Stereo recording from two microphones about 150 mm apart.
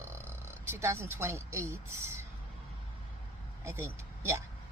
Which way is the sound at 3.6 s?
15° right (ahead or behind).